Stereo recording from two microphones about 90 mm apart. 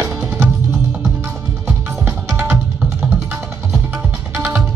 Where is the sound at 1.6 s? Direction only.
25° right (ahead or behind).